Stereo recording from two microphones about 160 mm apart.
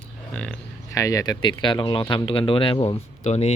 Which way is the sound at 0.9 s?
20° left (ahead or behind).